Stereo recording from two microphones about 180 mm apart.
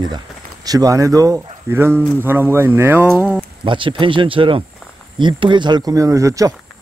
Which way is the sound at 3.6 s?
25° right (ahead or behind).